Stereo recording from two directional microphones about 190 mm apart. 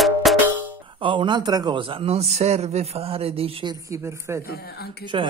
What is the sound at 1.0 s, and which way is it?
A man's voice, 25° right (ahead or behind).